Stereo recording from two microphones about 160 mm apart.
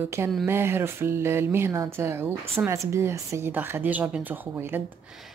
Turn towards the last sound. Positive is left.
turn(degrees=-15)  # may be behind; listen again after turning